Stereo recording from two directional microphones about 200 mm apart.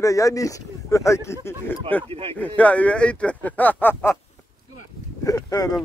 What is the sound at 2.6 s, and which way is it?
Speech, 5° left (ahead or behind).